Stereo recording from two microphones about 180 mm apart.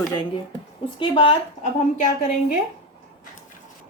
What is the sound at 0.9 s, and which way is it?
Speech, 30° left (ahead or behind).